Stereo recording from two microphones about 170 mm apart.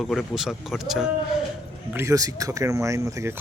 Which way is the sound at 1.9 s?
15° right (ahead or behind).